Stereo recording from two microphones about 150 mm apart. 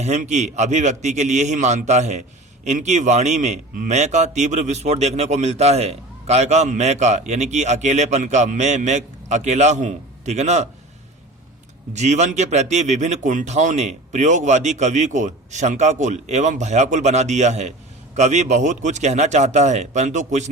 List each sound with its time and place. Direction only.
0.0 s speech: 50° right (ahead or behind)
11.9 s speech: 50° right (ahead or behind)